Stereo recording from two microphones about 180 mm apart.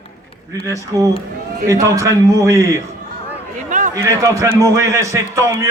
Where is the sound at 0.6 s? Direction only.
20° right (ahead or behind).